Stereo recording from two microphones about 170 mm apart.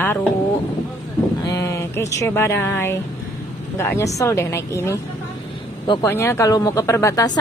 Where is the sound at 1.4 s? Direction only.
20° left (ahead or behind).